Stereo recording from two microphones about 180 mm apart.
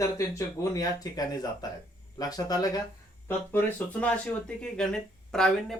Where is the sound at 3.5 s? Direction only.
10° left (ahead or behind).